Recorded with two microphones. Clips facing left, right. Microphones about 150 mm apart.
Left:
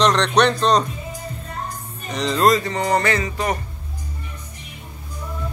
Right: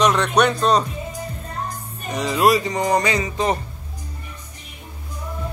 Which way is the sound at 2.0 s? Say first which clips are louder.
Even; 10° right (ahead or behind).